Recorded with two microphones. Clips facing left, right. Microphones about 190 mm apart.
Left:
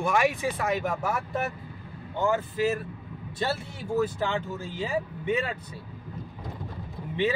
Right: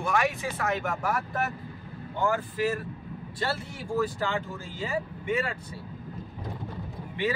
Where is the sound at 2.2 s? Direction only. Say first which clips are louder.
Left 2 dB; 20° left (ahead or behind).